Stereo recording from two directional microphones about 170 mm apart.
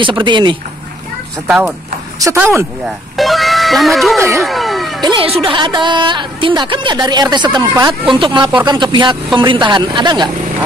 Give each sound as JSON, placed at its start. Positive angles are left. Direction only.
{"t": 0.0, "sound": "speech", "side_deg": -25}
{"t": 1.5, "sound": "speech", "side_deg": -5}
{"t": 2.1, "sound": "speech", "side_deg": -15}
{"t": 3.2, "sound": "music", "side_deg": 0}
{"t": 5.0, "sound": "speech", "side_deg": -30}